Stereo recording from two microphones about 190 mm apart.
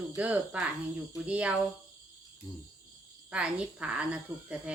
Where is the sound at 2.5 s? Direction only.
20° left (ahead or behind).